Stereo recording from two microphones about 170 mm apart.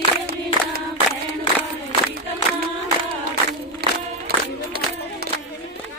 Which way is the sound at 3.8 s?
65° right (ahead or behind).